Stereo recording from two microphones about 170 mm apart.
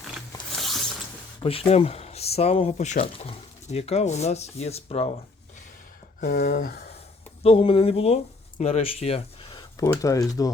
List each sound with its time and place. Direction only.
1.4 s speech: 35° left (ahead or behind)
6.1 s speech: 55° left (ahead or behind)
7.4 s speech: 35° left (ahead or behind)